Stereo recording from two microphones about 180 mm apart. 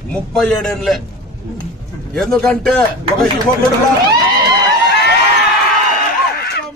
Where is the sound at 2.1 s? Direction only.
5° left (ahead or behind).